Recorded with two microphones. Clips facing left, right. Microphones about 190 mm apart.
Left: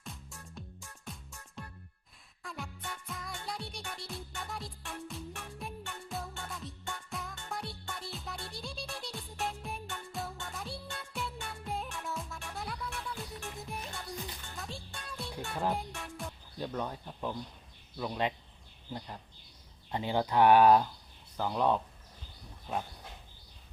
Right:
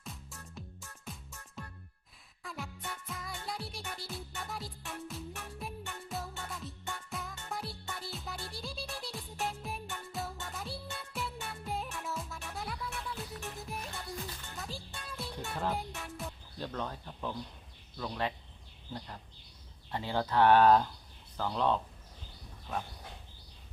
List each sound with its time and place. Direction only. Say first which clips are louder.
0.0 s music: even; centre (ahead or behind)
16.6 s a sound: left 2 dB; 10° left (ahead or behind)
17.9 s speech: left 2 dB; 15° left (ahead or behind)